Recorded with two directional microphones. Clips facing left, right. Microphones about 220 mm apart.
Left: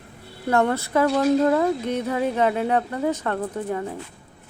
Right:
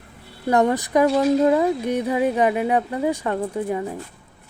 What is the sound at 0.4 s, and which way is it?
Speech, 15° right (ahead or behind).